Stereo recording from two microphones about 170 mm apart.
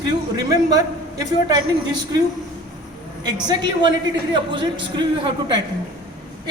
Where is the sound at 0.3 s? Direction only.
20° right (ahead or behind).